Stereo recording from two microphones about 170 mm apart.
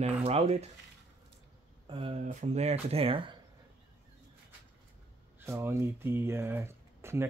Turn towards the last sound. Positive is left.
turn(degrees=-15)  # may be behind; listen again after turning